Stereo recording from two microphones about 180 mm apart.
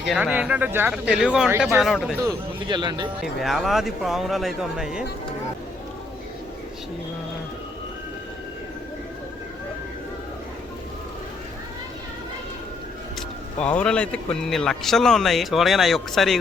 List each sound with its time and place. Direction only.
0.1 s speech: 5° right (ahead or behind)
2.2 s speech: 25° right (ahead or behind)
3.2 s speech: centre (ahead or behind)
13.7 s speech: 5° left (ahead or behind)